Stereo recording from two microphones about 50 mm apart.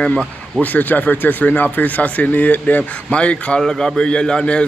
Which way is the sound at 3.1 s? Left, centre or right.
Left.